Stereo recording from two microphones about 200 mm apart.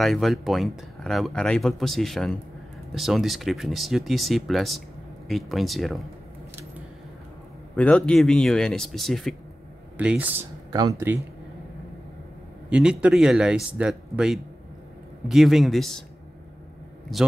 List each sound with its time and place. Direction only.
0.0 s speech: centre (ahead or behind)
7.7 s speech: 5° left (ahead or behind); by 11.2 s 15° right (ahead or behind)
12.6 s speech: 5° right (ahead or behind)
17.1 s speech: centre (ahead or behind)